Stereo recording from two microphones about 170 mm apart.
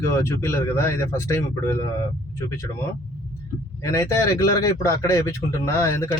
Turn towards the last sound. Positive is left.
turn(degrees=15)  # may be behind; listen again after turning